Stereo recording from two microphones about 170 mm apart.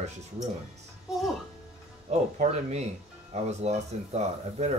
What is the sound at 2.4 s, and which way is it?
Speech, 40° right (ahead or behind).